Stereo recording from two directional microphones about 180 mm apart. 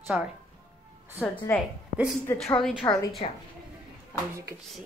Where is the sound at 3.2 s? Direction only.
35° left (ahead or behind).